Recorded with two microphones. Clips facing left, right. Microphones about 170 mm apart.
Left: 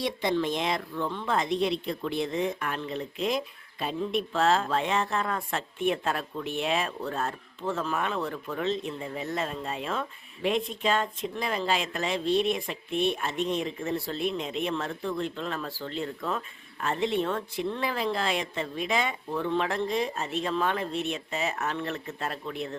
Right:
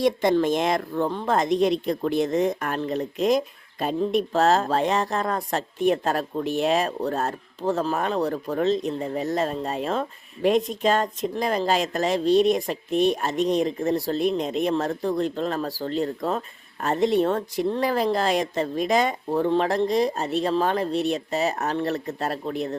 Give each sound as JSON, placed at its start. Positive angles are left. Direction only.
{"t": 0.0, "sound": "a woman's voice", "side_deg": -45}